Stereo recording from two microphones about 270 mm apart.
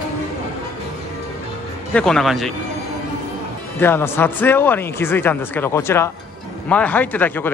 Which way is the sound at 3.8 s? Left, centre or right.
Centre.